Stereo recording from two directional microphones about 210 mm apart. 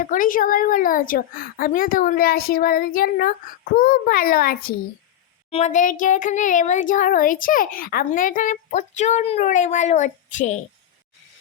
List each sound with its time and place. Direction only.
0.0 s a woman's voice: 40° left (ahead or behind)
5.5 s speech: 30° left (ahead or behind)